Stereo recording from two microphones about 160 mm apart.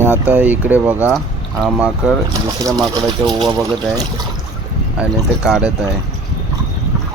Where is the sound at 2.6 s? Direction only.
25° right (ahead or behind).